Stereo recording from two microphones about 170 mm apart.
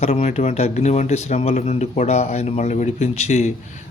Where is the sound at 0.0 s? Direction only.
40° left (ahead or behind).